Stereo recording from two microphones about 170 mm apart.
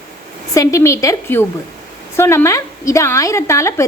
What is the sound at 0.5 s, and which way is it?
A woman's voice, 20° left (ahead or behind).